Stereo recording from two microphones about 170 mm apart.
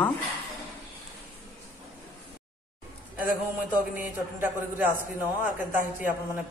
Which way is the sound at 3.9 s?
10° right (ahead or behind).